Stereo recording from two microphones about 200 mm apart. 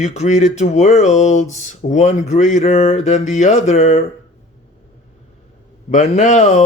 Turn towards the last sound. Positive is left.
turn(degrees=35)  # may be behind; listen again after turning